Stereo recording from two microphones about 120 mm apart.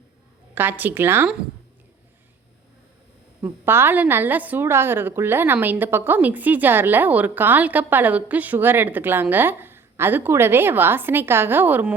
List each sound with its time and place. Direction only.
0.5 s a woman's voice: 15° right (ahead or behind)
3.4 s a woman's voice: 20° right (ahead or behind)